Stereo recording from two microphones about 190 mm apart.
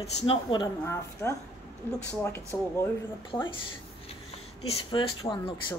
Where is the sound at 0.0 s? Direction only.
25° left (ahead or behind); by 2.9 s 10° left (ahead or behind).